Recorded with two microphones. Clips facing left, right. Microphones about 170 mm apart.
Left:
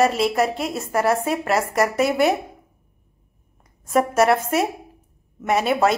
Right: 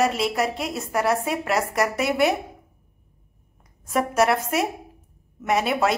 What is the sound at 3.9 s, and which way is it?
A woman's voice, centre (ahead or behind).